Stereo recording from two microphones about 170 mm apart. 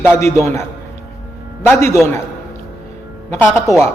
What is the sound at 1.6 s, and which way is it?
Speech, 15° left (ahead or behind).